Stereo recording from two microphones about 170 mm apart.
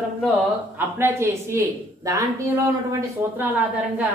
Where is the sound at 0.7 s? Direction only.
10° right (ahead or behind).